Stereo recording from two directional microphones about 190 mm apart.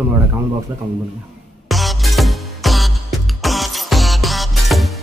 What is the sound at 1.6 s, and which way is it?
Music, centre (ahead or behind).